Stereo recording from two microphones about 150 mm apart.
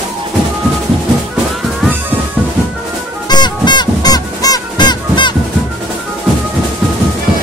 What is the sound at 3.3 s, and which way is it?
Music, 30° left (ahead or behind).